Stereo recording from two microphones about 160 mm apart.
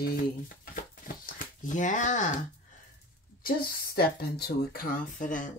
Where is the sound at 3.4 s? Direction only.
75° left (ahead or behind); by 5.5 s 55° left (ahead or behind).